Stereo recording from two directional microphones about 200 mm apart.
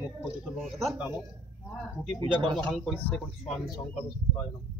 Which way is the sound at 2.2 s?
25° right (ahead or behind).